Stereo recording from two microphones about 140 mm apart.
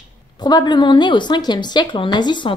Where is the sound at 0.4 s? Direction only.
30° left (ahead or behind).